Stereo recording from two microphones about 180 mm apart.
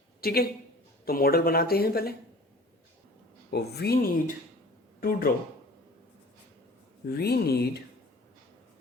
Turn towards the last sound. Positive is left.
turn(degrees=60)  # may be behind; listen again after turning